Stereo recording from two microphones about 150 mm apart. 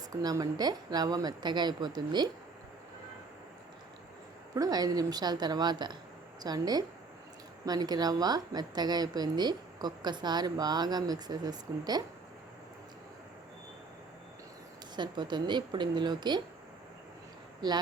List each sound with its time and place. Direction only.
0.1 s a woman's voice: 25° right (ahead or behind)
4.5 s a woman's voice: 25° right (ahead or behind)
14.9 s a woman's voice: 30° right (ahead or behind)
17.6 s a woman's voice: 30° right (ahead or behind)